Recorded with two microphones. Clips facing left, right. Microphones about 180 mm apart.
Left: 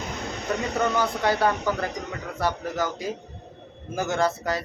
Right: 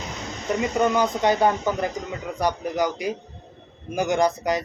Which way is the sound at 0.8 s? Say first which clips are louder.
Right 4 dB; 15° right (ahead or behind).